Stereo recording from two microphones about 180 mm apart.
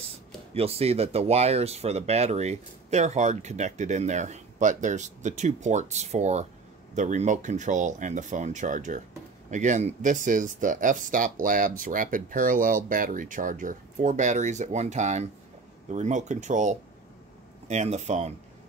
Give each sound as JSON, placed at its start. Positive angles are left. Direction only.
{"t": 0.6, "sound": "speech", "side_deg": -35}